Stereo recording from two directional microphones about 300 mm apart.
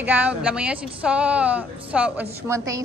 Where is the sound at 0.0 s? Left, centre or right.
Centre.